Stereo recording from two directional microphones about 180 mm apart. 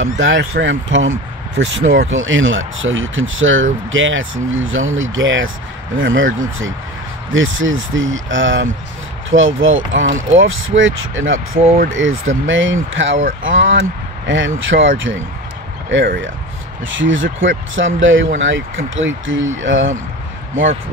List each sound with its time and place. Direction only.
0.0 s speech: 90° right
7.3 s speech: 90° right
16.8 s speech: 90° right